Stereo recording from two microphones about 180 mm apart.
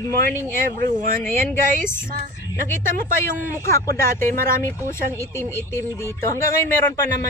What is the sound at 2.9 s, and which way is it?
Speech, 50° right (ahead or behind).